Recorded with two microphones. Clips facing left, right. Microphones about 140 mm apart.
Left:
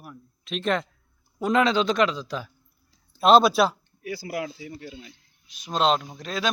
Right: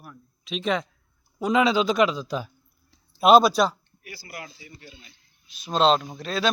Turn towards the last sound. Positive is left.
turn(degrees=15)  # may be behind; listen again after turning